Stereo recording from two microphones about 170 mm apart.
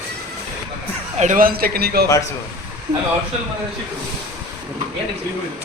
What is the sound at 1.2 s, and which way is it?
Speech, 50° right (ahead or behind).